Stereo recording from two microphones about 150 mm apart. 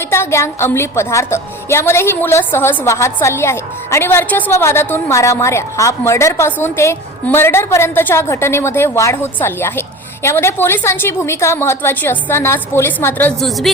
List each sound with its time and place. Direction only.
0.1 s a woman's voice: 15° left (ahead or behind)